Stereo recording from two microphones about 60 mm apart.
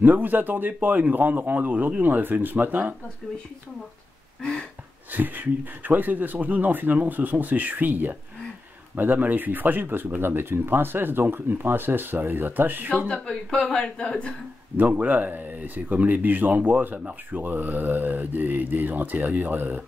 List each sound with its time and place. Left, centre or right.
0.0 s speech: right
4.4 s a sound: centre
5.1 s speech: right
13.1 s a woman's voice: centre
14.8 s speech: right